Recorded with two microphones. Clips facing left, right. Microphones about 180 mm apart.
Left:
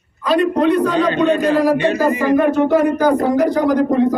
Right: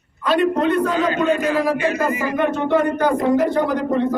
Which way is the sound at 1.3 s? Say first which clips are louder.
Left 4 dB; 30° left (ahead or behind).